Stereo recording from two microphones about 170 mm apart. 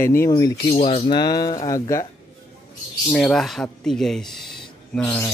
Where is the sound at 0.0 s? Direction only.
15° left (ahead or behind).